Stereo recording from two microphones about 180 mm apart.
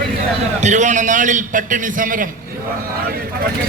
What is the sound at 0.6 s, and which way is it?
A man's voice, 40° right (ahead or behind).